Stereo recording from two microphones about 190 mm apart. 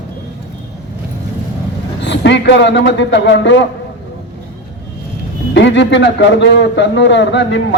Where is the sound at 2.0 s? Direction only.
70° left (ahead or behind).